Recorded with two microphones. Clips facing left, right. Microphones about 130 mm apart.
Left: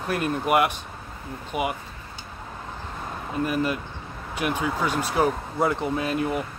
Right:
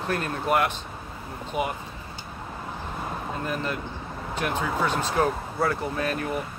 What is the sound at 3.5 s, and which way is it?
Speech, 10° left (ahead or behind).